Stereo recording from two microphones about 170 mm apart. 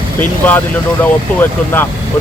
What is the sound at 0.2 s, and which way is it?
Speech, 10° left (ahead or behind).